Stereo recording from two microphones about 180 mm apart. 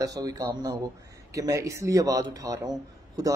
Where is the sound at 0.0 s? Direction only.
20° right (ahead or behind).